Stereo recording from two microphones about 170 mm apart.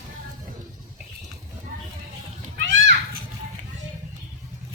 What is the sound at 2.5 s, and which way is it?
Children playing, 90° right.